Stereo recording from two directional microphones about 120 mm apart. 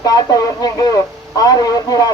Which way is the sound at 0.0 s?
30° left (ahead or behind).